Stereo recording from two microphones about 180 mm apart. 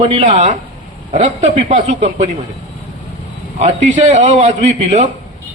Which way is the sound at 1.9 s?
40° right (ahead or behind).